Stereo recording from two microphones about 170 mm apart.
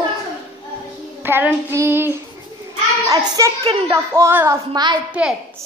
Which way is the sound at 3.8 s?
15° right (ahead or behind).